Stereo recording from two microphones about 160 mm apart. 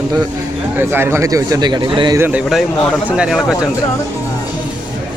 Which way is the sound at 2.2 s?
10° right (ahead or behind).